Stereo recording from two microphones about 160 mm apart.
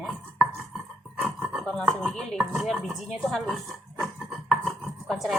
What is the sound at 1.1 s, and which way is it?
Speech, 5° right (ahead or behind).